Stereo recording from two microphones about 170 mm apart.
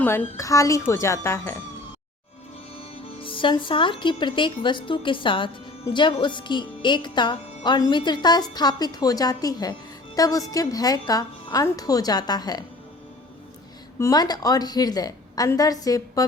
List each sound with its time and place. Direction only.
0.0 s speech: 10° left (ahead or behind)
3.2 s speech: 30° left (ahead or behind)
14.0 s speech: 20° left (ahead or behind)